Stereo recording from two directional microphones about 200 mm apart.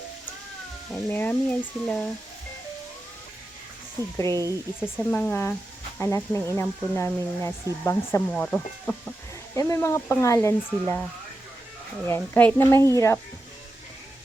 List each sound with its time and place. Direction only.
0.9 s speech: 10° left (ahead or behind)
4.3 s speech: 20° right (ahead or behind)
5.1 s speech: 10° left (ahead or behind)
12.0 s speech: 10° left (ahead or behind)